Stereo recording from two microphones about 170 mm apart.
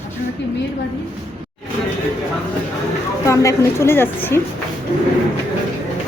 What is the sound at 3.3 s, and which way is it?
A woman's voice, 15° left (ahead or behind).